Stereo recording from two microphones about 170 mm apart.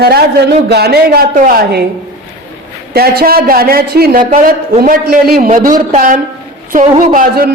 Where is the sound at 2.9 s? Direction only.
65° right (ahead or behind).